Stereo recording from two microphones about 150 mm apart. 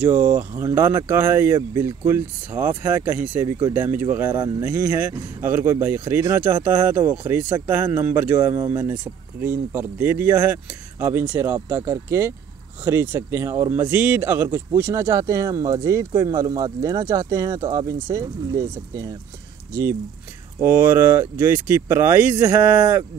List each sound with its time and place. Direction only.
0.3 s speech: 15° right (ahead or behind)